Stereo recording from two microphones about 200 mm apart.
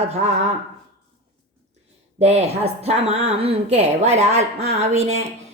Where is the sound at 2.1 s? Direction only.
30° right (ahead or behind).